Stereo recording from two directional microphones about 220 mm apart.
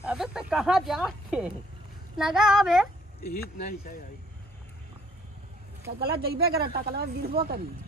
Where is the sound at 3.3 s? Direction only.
40° left (ahead or behind).